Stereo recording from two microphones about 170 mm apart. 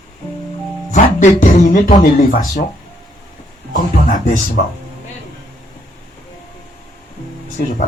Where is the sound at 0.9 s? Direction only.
45° left (ahead or behind).